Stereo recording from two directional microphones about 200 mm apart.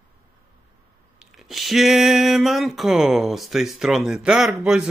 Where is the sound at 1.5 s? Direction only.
Centre (ahead or behind).